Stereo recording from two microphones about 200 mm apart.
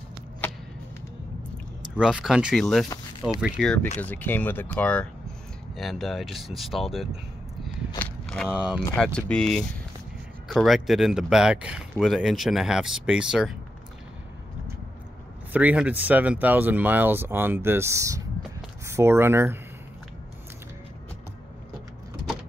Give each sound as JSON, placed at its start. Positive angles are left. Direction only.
{"t": 0.4, "sound": "a sound", "side_deg": 10}
{"t": 2.0, "sound": "speech", "side_deg": -5}
{"t": 2.9, "sound": "speech", "side_deg": 20}
{"t": 3.5, "sound": "speech", "side_deg": 5}
{"t": 8.0, "sound": "a sound", "side_deg": 5}
{"t": 8.5, "sound": "speech", "side_deg": -5}
{"t": 8.9, "sound": "speech", "side_deg": 5}
{"t": 15.5, "sound": "speech", "side_deg": -5}